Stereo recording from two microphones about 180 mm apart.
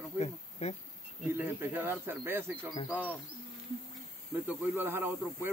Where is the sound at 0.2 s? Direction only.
35° left (ahead or behind).